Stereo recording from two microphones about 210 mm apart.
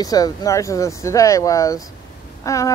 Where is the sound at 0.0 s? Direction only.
15° left (ahead or behind).